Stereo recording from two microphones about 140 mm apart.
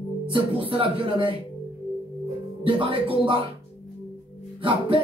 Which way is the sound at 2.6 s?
40° right (ahead or behind).